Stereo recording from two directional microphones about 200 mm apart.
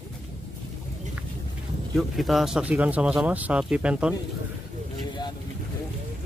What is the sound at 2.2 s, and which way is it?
Speech, centre (ahead or behind).